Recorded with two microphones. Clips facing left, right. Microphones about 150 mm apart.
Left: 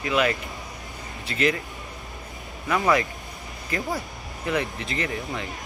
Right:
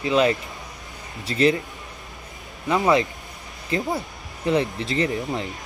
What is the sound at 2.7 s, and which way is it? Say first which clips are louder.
Speech: right 3 dB; 25° right (ahead or behind).